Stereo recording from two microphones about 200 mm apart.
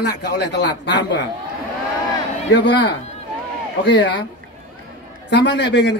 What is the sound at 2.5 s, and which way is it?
Speech, 60° left (ahead or behind).